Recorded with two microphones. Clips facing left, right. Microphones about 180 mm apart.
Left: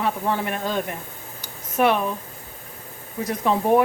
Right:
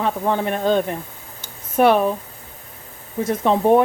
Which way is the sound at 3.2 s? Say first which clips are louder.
Right 4 dB; 25° right (ahead or behind).